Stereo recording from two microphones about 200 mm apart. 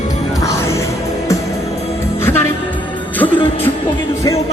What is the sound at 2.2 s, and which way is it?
Speech, 10° left (ahead or behind).